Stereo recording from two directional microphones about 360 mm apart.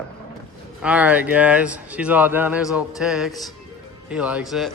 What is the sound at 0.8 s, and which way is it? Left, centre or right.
Speech, centre.